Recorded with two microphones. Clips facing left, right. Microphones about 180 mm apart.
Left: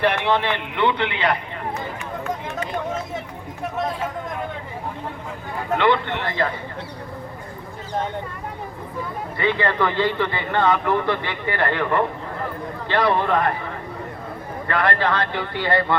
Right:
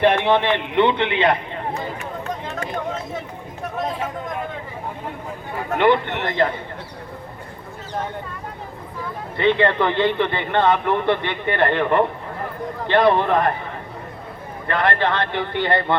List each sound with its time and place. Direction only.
0.0 s a man's voice: 20° right (ahead or behind)
5.7 s a man's voice: 15° right (ahead or behind)
9.4 s a man's voice: 25° right (ahead or behind)
14.7 s a man's voice: 20° right (ahead or behind)